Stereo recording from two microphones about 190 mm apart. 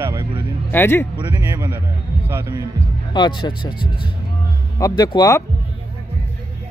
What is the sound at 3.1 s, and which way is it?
Speech, 25° left (ahead or behind).